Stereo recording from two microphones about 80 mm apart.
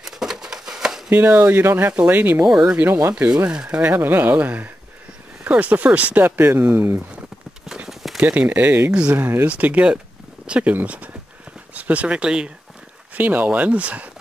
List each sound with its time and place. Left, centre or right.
0.0 s a sound: centre
1.1 s speech: right
2.4 s speech: centre
2.8 s speech: right
3.4 s speech: centre
3.9 s speech: right
7.6 s clip-clop: centre
8.2 s speech: centre
9.5 s speech: centre
13.1 s speech: right